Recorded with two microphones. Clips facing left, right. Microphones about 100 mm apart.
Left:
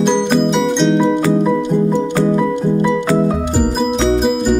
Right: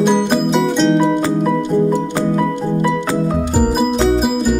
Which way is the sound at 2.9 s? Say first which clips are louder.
Left 3 dB; centre (ahead or behind).